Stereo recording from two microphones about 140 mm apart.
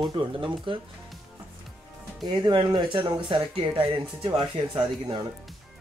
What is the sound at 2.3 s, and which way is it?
Speech, 35° right (ahead or behind).